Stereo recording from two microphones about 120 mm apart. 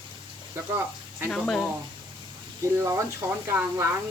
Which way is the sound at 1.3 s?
5° left (ahead or behind).